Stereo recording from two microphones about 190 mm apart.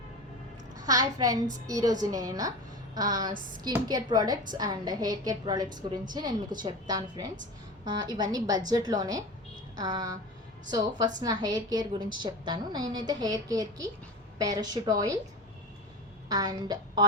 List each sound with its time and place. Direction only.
0.8 s a woman's voice: 20° right (ahead or behind)
16.3 s a woman's voice: 20° right (ahead or behind)